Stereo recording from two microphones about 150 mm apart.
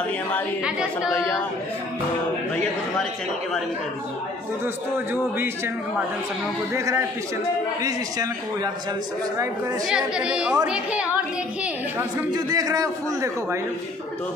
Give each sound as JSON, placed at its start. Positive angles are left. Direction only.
{"t": 0.7, "sound": "a woman's voice", "side_deg": -5}
{"t": 1.1, "sound": "speech", "side_deg": 20}
{"t": 6.7, "sound": "a man's voice", "side_deg": -20}
{"t": 9.8, "sound": "a woman's voice", "side_deg": -5}
{"t": 12.4, "sound": "a man's voice", "side_deg": -25}